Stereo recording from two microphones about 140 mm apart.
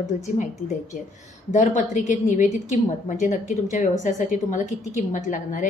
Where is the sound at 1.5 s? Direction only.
60° left (ahead or behind).